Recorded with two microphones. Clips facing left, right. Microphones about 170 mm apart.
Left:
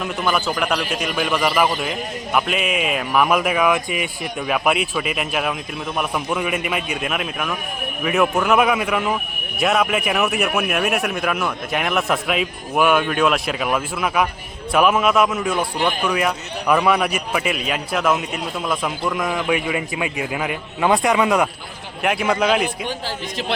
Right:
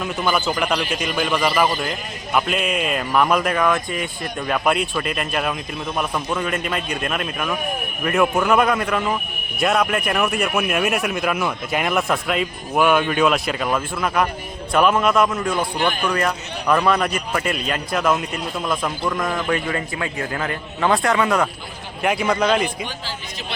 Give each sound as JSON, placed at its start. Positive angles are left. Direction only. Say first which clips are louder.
{"t": 0.0, "sound": "a man's voice", "louder": "even", "side_deg": 0}
{"t": 22.0, "sound": "a man's voice", "louder": "even", "side_deg": 0}